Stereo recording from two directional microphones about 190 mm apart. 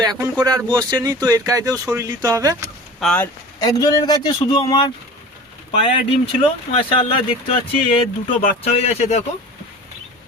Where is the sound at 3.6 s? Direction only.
20° left (ahead or behind).